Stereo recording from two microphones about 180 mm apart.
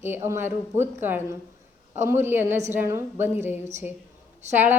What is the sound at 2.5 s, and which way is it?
Speech, 40° right (ahead or behind).